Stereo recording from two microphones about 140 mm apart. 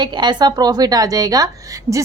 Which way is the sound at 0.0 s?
30° right (ahead or behind).